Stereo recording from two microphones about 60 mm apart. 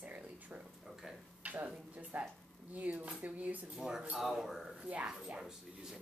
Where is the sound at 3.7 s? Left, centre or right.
Centre.